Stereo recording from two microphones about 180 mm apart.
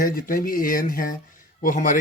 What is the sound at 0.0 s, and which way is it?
Speech, 50° left (ahead or behind).